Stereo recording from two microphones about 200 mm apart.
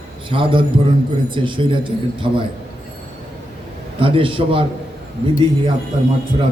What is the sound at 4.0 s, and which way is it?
Speech, 25° right (ahead or behind).